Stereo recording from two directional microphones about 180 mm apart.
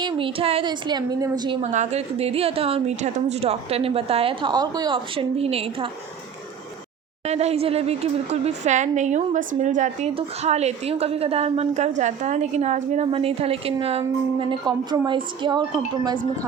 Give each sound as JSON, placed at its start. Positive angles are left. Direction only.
{"t": 0.0, "sound": "a woman's voice", "side_deg": -30}
{"t": 1.6, "sound": "a woman's voice", "side_deg": -40}
{"t": 7.3, "sound": "a woman's voice", "side_deg": -35}